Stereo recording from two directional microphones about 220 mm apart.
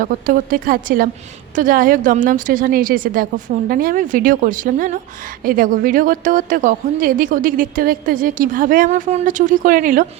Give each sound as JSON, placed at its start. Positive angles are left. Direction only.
{"t": 0.0, "sound": "a woman's voice", "side_deg": -35}